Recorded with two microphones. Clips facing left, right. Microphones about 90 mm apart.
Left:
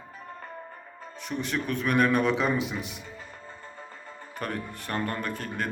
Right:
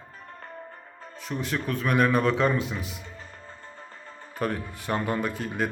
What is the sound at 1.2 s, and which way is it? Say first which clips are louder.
Speech: even; centre (ahead or behind).